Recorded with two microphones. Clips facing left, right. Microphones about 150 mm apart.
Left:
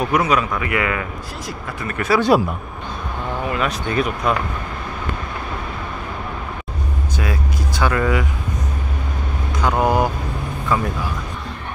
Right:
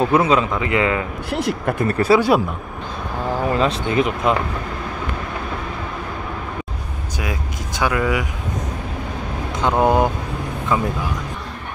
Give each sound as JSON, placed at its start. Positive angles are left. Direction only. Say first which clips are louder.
{"t": 0.0, "sound": "a man's voice", "louder": "right 2 dB", "side_deg": -25}
{"t": 1.3, "sound": "speech", "louder": "right 9 dB", "side_deg": -65}
{"t": 1.9, "sound": "speech", "louder": "right 4 dB", "side_deg": -35}
{"t": 3.4, "sound": "a man's voice", "louder": "right 3 dB", "side_deg": -30}
{"t": 7.2, "sound": "speech", "louder": "left 1 dB", "side_deg": -15}
{"t": 9.6, "sound": "a man's voice", "louder": "right 1 dB", "side_deg": -25}